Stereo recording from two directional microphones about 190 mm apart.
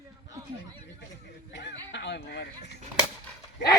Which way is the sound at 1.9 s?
65° left (ahead or behind).